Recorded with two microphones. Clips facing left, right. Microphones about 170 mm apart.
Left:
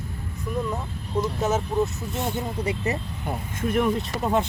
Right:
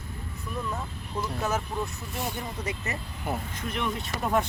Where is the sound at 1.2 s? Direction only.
20° left (ahead or behind).